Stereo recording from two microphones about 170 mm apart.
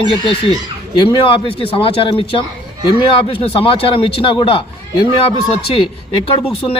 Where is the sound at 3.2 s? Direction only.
30° left (ahead or behind).